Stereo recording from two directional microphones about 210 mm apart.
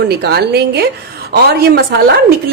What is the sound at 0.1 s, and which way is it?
A woman's voice, 50° right (ahead or behind).